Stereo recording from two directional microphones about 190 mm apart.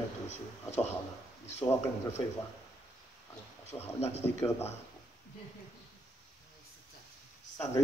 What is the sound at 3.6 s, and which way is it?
Speech, 35° left (ahead or behind).